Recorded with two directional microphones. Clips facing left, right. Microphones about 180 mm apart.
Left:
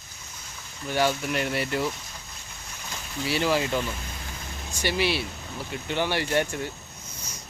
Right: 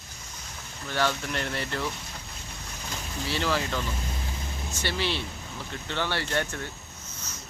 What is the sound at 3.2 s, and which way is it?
Speech, 15° left (ahead or behind).